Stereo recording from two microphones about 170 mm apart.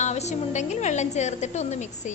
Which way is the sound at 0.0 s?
40° left (ahead or behind).